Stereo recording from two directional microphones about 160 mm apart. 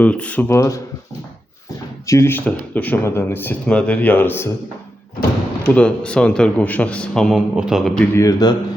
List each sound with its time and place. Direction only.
0.0 s speech: 10° left (ahead or behind)
2.0 s speech: 15° left (ahead or behind)
5.6 s a man's voice: 5° left (ahead or behind)
8.1 s a man's voice: 20° left (ahead or behind)